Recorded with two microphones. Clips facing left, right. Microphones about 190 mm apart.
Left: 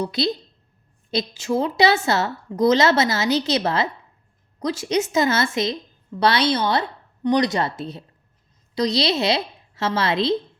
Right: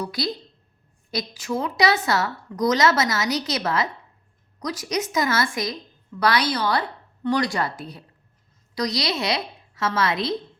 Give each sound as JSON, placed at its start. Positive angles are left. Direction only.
{"t": 0.0, "sound": "a woman's voice", "side_deg": 25}